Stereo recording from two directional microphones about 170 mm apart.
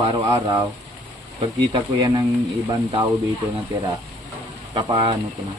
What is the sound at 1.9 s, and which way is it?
Speech, 25° right (ahead or behind).